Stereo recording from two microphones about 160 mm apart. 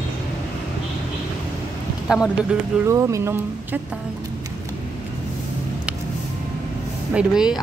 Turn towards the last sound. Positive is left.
turn(degrees=-5)  # may be behind; listen again after turning